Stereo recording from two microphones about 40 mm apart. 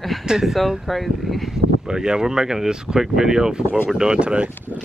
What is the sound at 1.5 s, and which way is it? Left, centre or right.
Speech, centre.